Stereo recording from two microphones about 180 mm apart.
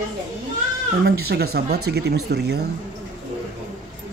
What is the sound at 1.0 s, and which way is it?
Speech, 60° right (ahead or behind).